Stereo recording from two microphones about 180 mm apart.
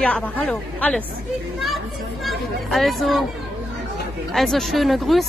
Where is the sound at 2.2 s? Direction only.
Centre (ahead or behind).